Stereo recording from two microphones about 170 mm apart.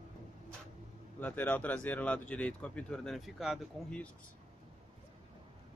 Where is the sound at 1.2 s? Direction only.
10° left (ahead or behind).